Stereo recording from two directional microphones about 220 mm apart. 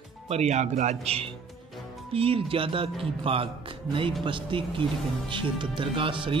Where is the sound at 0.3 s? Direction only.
30° right (ahead or behind).